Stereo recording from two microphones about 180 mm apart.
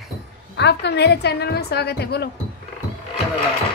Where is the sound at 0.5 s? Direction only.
70° left (ahead or behind).